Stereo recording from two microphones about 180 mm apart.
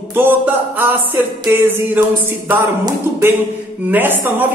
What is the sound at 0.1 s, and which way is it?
Music, 10° right (ahead or behind).